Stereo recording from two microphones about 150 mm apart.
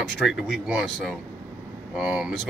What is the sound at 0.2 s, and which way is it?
Speech, centre (ahead or behind).